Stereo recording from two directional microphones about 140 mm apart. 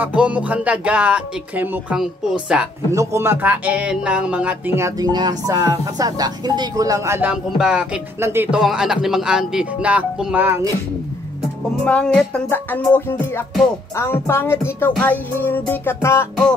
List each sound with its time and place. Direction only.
0.0 s speech: 10° right (ahead or behind)
2.9 s speech: 20° right (ahead or behind)
7.5 s speech: 5° right (ahead or behind)
8.2 s speech: 15° right (ahead or behind)
8.5 s speech: 5° right (ahead or behind)
11.8 s music: 5° left (ahead or behind)